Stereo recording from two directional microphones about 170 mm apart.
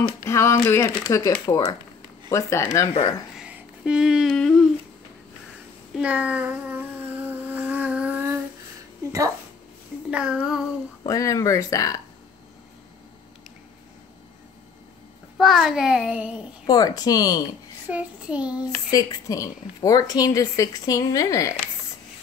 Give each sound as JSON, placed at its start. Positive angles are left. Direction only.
{"t": 0.2, "sound": "a woman's voice", "side_deg": 15}
{"t": 3.3, "sound": "a sound", "side_deg": -5}
{"t": 5.9, "sound": "a sound", "side_deg": -10}
{"t": 10.1, "sound": "child singing", "side_deg": -5}
{"t": 11.1, "sound": "a woman's voice", "side_deg": 20}
{"t": 15.3, "sound": "a child's voice", "side_deg": 0}
{"t": 16.6, "sound": "a woman's voice", "side_deg": 25}
{"t": 17.8, "sound": "child singing", "side_deg": -10}
{"t": 18.9, "sound": "a woman's voice", "side_deg": 20}